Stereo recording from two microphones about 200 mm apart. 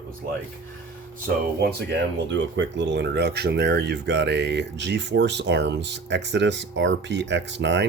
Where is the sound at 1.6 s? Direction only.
55° right (ahead or behind).